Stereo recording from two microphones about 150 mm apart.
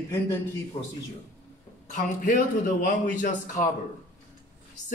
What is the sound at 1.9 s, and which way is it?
Speech, 60° left (ahead or behind).